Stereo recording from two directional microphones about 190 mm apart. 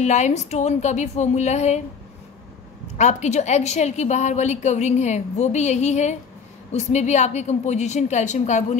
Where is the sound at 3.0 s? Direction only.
35° left (ahead or behind).